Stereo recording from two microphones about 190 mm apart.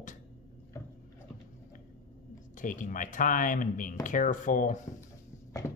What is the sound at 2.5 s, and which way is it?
Speech, 45° left (ahead or behind).